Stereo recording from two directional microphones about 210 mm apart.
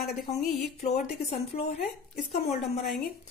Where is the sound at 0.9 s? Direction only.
30° left (ahead or behind).